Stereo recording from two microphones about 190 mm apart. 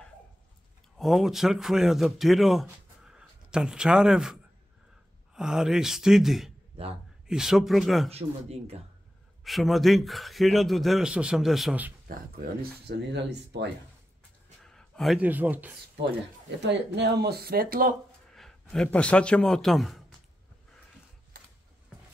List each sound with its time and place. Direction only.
0.9 s speech: centre (ahead or behind)
2.6 s a sound: 5° right (ahead or behind)
5.3 s speech: 5° right (ahead or behind)
6.8 s speech: 30° right (ahead or behind)
7.2 s speech: centre (ahead or behind)
8.1 s speech: 30° right (ahead or behind)
9.4 s speech: centre (ahead or behind)
12.1 s speech: 50° right (ahead or behind)
14.6 s speech: 5° left (ahead or behind)
16.6 s speech: 65° right (ahead or behind)
18.3 s a man's voice: centre (ahead or behind)